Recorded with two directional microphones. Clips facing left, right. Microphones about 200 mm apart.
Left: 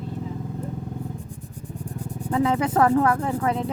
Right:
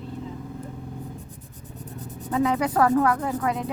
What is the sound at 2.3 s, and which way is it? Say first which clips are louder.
A woman's voice: left 1 dB; 25° left (ahead or behind).